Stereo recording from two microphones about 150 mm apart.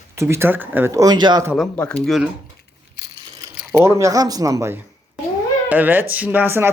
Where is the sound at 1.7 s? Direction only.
10° left (ahead or behind).